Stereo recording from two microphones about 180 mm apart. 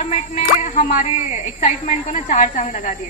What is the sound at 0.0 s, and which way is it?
A woman's voice, 45° left (ahead or behind).